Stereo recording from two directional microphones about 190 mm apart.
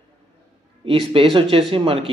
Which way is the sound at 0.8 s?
30° right (ahead or behind).